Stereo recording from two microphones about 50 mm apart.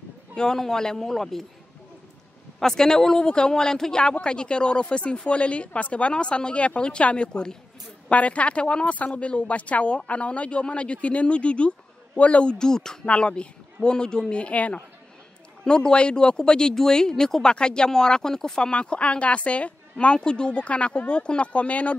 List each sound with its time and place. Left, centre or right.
0.4 s speech: centre
2.6 s speech: centre; by 14.8 s left
15.6 s speech: centre